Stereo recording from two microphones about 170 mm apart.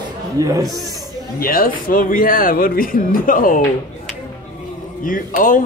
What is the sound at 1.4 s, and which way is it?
Speech, 55° left (ahead or behind).